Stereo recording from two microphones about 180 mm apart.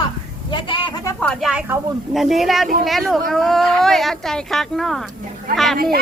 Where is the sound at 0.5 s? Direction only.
25° left (ahead or behind).